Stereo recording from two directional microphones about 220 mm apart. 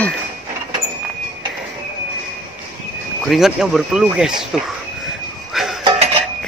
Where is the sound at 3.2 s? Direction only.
Centre (ahead or behind).